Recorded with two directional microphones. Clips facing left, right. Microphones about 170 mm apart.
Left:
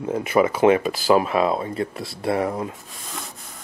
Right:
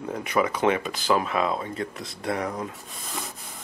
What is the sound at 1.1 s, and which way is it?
Speech, 35° left (ahead or behind).